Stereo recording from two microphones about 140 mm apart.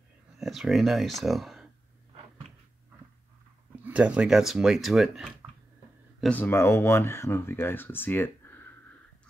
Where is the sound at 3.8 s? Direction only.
10° right (ahead or behind).